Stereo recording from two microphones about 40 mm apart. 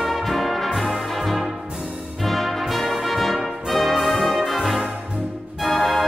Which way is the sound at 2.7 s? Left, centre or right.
Centre.